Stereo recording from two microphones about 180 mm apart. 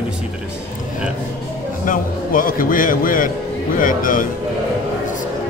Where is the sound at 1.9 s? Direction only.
50° left (ahead or behind).